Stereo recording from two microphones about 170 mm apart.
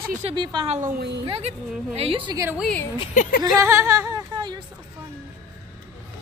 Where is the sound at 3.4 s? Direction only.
15° right (ahead or behind).